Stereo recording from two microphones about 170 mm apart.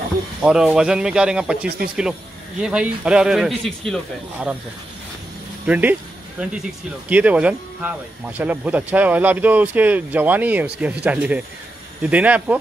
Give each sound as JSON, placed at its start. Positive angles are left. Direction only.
{"t": 0.4, "sound": "a man's voice", "side_deg": -5}
{"t": 5.7, "sound": "speech", "side_deg": -10}